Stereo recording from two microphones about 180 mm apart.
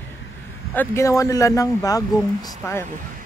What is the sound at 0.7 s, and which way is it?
Speech, 15° left (ahead or behind).